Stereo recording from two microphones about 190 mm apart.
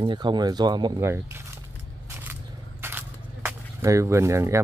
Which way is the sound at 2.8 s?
10° right (ahead or behind).